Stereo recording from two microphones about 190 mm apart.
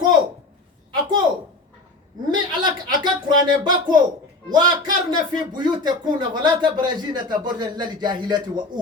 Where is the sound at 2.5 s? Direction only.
25° right (ahead or behind).